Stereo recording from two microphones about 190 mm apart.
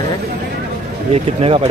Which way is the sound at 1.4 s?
30° right (ahead or behind).